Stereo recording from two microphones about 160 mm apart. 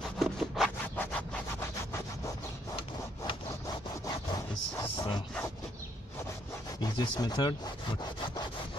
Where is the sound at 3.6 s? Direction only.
20° left (ahead or behind).